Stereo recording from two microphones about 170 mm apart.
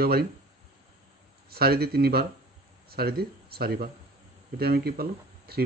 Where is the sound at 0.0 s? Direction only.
65° right (ahead or behind).